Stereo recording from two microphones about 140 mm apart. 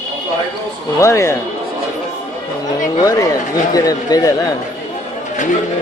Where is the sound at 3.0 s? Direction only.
25° left (ahead or behind).